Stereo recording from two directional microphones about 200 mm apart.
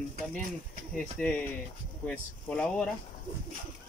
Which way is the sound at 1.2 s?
5° left (ahead or behind).